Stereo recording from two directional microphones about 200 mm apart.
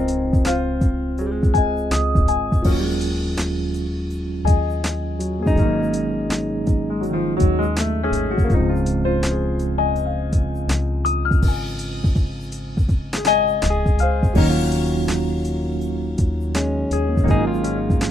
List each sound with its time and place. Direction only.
0.0 s music: centre (ahead or behind)
5.4 s music: centre (ahead or behind)
10.7 s music: centre (ahead or behind)
13.2 s music: centre (ahead or behind)
16.2 s music: centre (ahead or behind)